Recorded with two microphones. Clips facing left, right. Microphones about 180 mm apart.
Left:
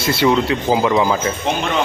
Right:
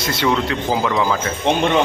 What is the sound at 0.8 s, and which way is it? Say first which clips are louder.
Speech: left 3 dB; 20° left (ahead or behind).